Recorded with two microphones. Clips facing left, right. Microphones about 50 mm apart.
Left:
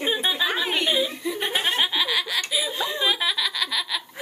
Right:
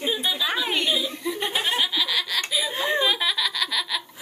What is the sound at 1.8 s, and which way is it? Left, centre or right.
Laughter, centre.